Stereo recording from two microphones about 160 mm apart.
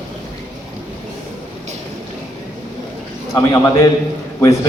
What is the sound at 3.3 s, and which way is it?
Speech, 20° left (ahead or behind).